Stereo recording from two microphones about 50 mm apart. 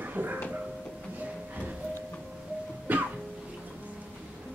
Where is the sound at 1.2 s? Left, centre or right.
Right.